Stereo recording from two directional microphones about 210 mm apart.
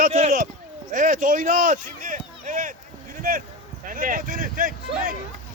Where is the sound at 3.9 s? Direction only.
40° right (ahead or behind).